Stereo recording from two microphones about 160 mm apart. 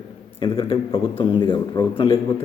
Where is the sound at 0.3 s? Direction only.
35° left (ahead or behind).